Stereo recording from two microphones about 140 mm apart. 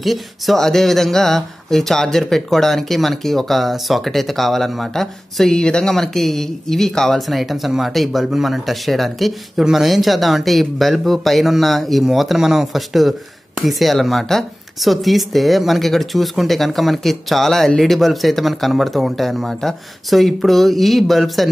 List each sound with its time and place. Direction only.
0.0 s speech: centre (ahead or behind)